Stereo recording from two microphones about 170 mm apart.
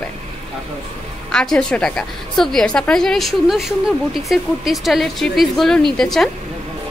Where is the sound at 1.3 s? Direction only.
5° left (ahead or behind).